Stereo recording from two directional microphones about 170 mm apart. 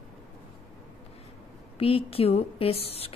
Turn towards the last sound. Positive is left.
turn(degrees=35)  # may be behind; listen again after turning